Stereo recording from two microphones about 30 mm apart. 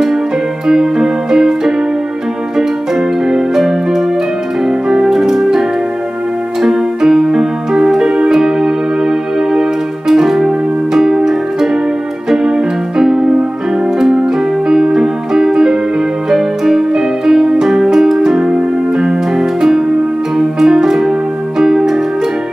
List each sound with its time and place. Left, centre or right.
0.7 s keyboard: centre
3.3 s music: centre
12.3 s keyboard: centre
14.1 s music: centre
19.3 s music: centre